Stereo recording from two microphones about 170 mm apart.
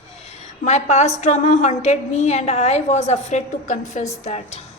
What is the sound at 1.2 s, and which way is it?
A woman's voice, 45° left (ahead or behind).